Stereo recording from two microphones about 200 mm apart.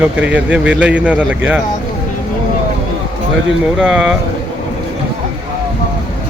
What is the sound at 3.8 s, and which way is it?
Speech, 5° right (ahead or behind).